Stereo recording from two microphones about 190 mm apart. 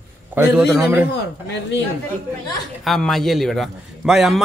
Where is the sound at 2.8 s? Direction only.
Centre (ahead or behind).